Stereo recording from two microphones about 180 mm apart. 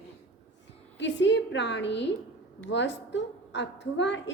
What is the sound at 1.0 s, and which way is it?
A woman's voice, 75° left (ahead or behind).